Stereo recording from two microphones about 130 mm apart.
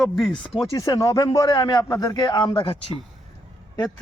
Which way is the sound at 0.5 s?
30° left (ahead or behind).